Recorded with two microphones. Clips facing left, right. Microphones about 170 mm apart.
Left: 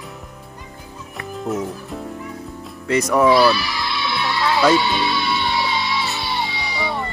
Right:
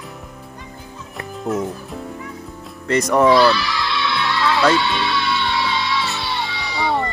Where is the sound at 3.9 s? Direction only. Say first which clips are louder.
Even; 10° left (ahead or behind).